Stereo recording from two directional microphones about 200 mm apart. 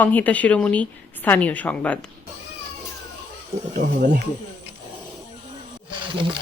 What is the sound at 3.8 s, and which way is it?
Speech, 35° right (ahead or behind).